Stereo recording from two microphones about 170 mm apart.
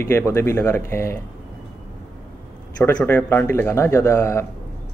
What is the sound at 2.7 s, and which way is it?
Speech, 10° left (ahead or behind).